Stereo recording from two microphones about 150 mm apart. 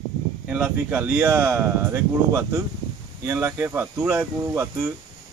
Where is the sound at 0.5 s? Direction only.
10° right (ahead or behind).